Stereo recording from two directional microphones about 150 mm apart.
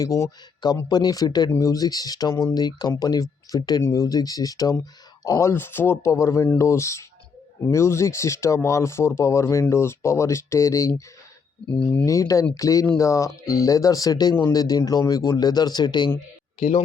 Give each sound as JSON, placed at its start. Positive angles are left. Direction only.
{"t": 0.0, "sound": "speech", "side_deg": 25}
{"t": 16.6, "sound": "speech", "side_deg": 55}